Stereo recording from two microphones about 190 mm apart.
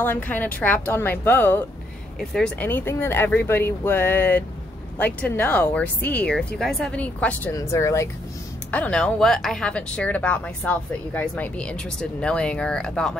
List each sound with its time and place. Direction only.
0.0 s a woman's voice: 10° left (ahead or behind)